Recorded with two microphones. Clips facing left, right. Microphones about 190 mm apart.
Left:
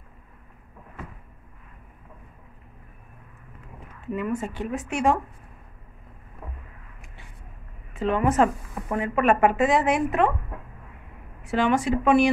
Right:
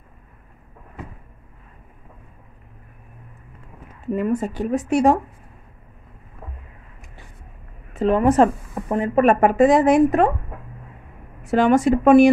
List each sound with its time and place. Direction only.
4.1 s speech: 40° right (ahead or behind)
7.9 s speech: 40° right (ahead or behind)
11.4 s speech: 45° right (ahead or behind)